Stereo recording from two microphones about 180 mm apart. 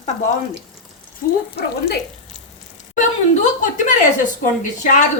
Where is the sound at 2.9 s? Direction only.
45° left (ahead or behind).